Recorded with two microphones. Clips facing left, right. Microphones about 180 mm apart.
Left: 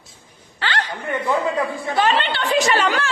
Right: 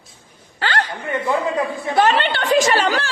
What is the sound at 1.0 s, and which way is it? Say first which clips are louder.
Speech: left 1 dB; 20° right (ahead or behind).